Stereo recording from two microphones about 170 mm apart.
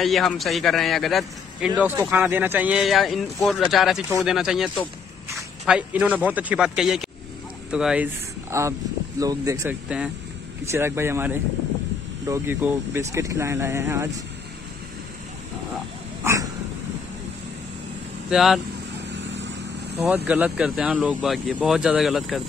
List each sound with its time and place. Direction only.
0.0 s speech: centre (ahead or behind)
1.8 s speech: 10° right (ahead or behind)
8.5 s speech: 15° right (ahead or behind)
16.2 s dog: 15° right (ahead or behind)
18.3 s speech: centre (ahead or behind)
19.1 s vehicle: 90° right
20.2 s speech: 5° right (ahead or behind)